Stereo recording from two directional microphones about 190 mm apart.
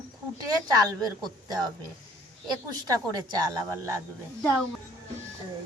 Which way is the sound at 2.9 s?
20° right (ahead or behind).